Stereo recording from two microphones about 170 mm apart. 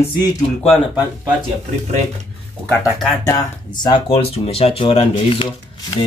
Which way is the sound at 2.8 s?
20° left (ahead or behind).